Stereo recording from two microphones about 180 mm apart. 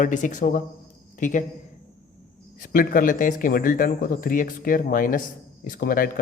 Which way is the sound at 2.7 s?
50° left (ahead or behind).